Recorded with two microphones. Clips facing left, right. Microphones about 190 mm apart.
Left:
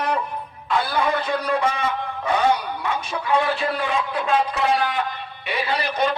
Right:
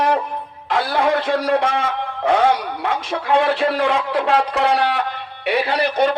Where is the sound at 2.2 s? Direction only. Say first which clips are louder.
Right 4 dB; 70° right (ahead or behind).